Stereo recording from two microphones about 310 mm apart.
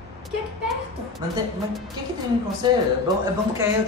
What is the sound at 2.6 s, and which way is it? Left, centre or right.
Speech, centre.